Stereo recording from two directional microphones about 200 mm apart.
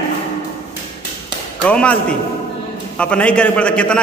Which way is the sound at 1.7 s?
5° left (ahead or behind).